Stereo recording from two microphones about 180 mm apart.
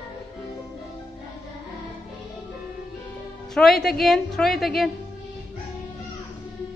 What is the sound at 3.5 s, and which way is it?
A woman's voice, centre (ahead or behind).